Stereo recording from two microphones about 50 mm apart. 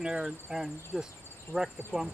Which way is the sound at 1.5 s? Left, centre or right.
Right.